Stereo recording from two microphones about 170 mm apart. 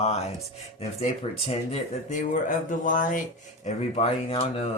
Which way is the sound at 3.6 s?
35° left (ahead or behind).